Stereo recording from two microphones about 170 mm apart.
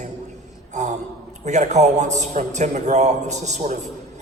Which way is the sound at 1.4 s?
45° right (ahead or behind).